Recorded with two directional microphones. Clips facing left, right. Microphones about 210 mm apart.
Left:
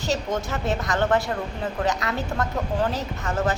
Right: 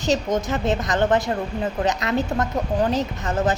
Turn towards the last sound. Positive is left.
turn(degrees=-20)  # may be behind; listen again after turning